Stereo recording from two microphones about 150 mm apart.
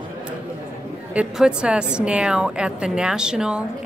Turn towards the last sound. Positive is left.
turn(degrees=-5)  # may be behind; listen again after turning